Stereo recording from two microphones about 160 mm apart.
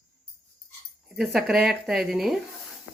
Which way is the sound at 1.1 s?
5° right (ahead or behind).